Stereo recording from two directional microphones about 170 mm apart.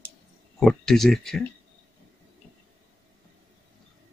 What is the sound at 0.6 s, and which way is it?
Speech, centre (ahead or behind).